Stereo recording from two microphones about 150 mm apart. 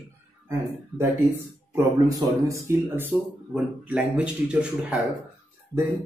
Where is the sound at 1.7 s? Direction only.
20° right (ahead or behind).